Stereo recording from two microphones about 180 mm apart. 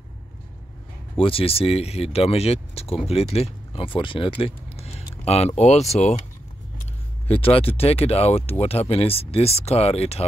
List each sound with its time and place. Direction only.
1.1 s speech: 30° left (ahead or behind)
7.2 s speech: 30° left (ahead or behind)